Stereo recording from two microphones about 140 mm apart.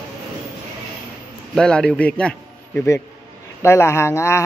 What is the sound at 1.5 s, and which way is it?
A man's voice, 5° left (ahead or behind).